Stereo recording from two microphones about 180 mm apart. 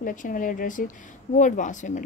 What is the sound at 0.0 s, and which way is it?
Speech, 45° left (ahead or behind).